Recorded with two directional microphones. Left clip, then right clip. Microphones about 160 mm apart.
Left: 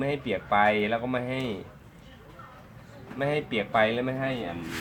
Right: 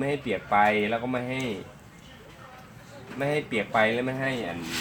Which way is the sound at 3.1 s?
10° right (ahead or behind).